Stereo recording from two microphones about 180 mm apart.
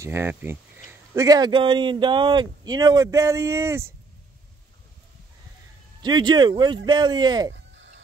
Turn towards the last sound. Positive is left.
turn(degrees=-25)  # may be behind; listen again after turning